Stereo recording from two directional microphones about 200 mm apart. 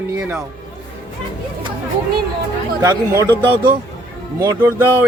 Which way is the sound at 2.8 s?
15° right (ahead or behind).